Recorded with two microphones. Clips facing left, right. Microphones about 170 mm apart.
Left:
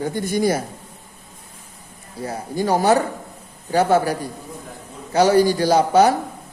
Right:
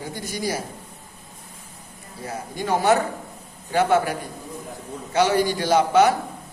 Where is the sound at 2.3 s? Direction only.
35° left (ahead or behind).